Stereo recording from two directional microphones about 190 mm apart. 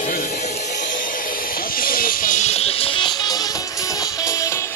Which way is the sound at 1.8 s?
50° left (ahead or behind).